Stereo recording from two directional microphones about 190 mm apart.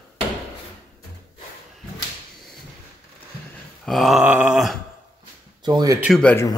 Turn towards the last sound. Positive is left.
turn(degrees=5)  # may be behind; listen again after turning